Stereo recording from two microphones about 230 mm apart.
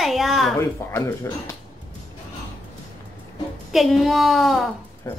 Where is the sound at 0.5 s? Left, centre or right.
Centre.